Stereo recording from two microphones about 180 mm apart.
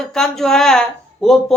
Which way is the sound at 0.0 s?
Centre (ahead or behind).